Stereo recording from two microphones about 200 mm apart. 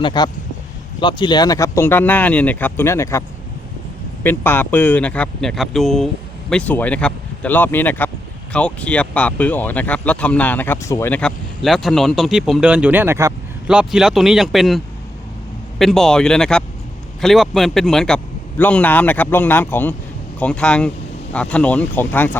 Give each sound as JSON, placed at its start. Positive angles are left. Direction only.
{"t": 0.0, "sound": "a man's voice", "side_deg": 20}
{"t": 15.8, "sound": "a man's voice", "side_deg": 0}